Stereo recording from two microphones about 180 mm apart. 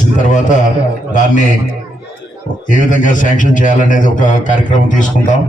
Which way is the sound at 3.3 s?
45° left (ahead or behind).